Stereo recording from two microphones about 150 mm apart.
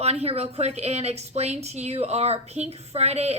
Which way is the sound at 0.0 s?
45° right (ahead or behind).